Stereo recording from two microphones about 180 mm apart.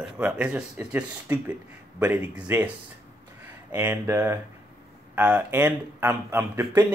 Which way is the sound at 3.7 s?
10° right (ahead or behind).